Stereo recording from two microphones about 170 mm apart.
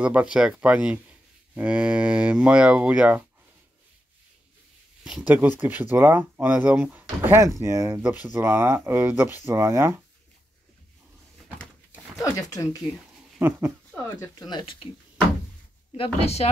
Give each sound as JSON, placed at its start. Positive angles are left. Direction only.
{"t": 0.0, "sound": "speech", "side_deg": -5}
{"t": 5.0, "sound": "speech", "side_deg": -5}
{"t": 12.2, "sound": "a sound", "side_deg": 20}
{"t": 13.4, "sound": "speech", "side_deg": -15}
{"t": 14.0, "sound": "speech", "side_deg": 20}
{"t": 16.0, "sound": "a woman's voice", "side_deg": 40}